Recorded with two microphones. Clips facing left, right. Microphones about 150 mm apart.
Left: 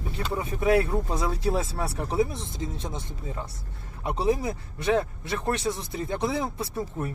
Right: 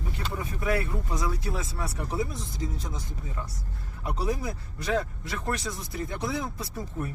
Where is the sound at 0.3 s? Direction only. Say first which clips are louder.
Left 6 dB; 25° left (ahead or behind).